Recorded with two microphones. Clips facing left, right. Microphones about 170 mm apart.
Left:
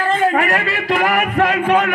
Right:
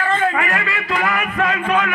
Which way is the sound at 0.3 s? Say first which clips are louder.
Left 4 dB; 35° left (ahead or behind).